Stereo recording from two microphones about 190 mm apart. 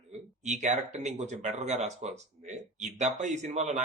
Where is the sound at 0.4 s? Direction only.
40° right (ahead or behind).